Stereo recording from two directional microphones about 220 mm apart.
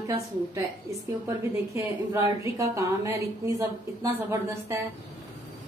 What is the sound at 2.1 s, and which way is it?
A woman's voice, 15° right (ahead or behind).